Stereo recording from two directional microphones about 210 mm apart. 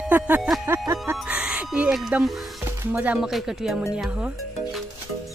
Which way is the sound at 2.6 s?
10° right (ahead or behind).